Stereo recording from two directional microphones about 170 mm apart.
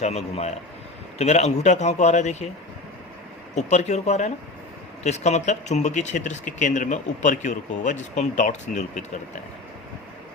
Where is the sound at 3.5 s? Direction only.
40° left (ahead or behind).